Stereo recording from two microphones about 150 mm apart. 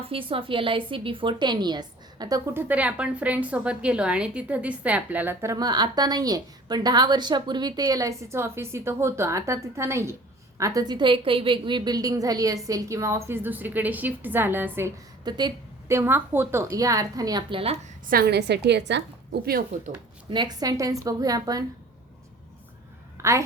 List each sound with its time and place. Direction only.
0.0 s a woman's voice: 35° right (ahead or behind)
2.5 s a woman's voice: 15° right (ahead or behind)
15.2 s a sound: 30° right (ahead or behind)
16.0 s a woman's voice: 15° right (ahead or behind)
18.1 s a woman's voice: 90° right
20.3 s a woman's voice: 30° right (ahead or behind)
23.1 s a sound: 20° right (ahead or behind)